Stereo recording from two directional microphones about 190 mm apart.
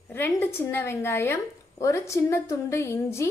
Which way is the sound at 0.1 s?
10° left (ahead or behind).